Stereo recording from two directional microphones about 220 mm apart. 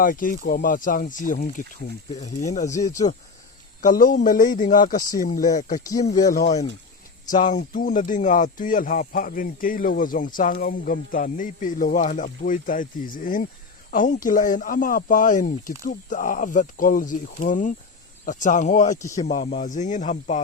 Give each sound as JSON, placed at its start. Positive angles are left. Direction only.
{"t": 0.0, "sound": "speech", "side_deg": 40}
{"t": 2.7, "sound": "speech", "side_deg": 15}
{"t": 3.8, "sound": "speech", "side_deg": 40}
{"t": 5.8, "sound": "speech", "side_deg": 15}
{"t": 7.3, "sound": "speech", "side_deg": 35}